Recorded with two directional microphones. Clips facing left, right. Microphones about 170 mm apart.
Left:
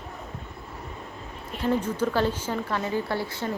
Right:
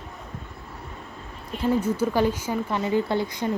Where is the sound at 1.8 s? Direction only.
10° right (ahead or behind).